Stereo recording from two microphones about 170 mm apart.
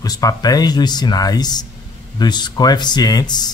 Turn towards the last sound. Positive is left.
turn(degrees=25)  # may be behind; listen again after turning